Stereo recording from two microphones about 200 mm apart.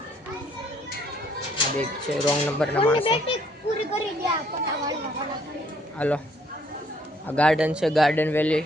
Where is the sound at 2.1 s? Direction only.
Centre (ahead or behind).